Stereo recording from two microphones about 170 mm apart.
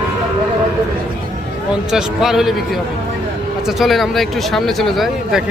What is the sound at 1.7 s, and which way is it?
Speech, 5° right (ahead or behind).